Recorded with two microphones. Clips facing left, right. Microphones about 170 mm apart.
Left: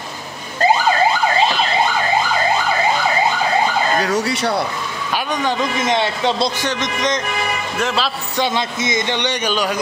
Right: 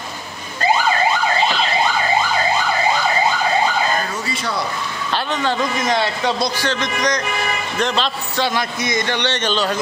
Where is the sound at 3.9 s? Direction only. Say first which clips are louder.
Left 6 dB; 85° left.